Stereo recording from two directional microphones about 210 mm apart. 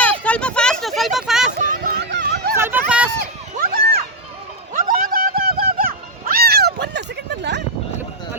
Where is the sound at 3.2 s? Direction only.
45° right (ahead or behind).